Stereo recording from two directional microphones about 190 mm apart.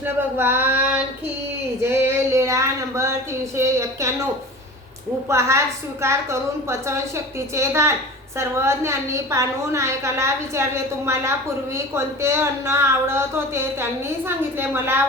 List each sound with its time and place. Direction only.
0.0 s a woman's voice: 10° right (ahead or behind)
1.8 s a sound: 15° right (ahead or behind)
3.6 s a woman's voice: 15° right (ahead or behind)
5.3 s a woman's voice: 15° right (ahead or behind)